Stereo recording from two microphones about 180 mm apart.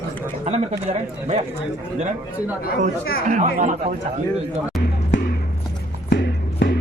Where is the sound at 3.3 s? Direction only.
40° right (ahead or behind).